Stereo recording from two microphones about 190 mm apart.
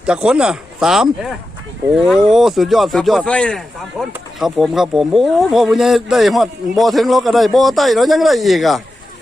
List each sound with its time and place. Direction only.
0.0 s speech: 5° right (ahead or behind)
2.0 s speech: centre (ahead or behind)